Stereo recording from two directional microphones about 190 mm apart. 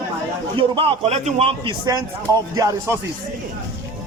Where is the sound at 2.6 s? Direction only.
15° right (ahead or behind).